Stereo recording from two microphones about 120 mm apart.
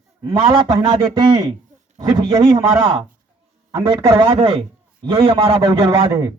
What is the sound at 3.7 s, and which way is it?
Speech, 30° right (ahead or behind).